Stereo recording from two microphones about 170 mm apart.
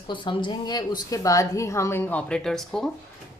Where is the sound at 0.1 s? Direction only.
30° left (ahead or behind); by 2.9 s centre (ahead or behind).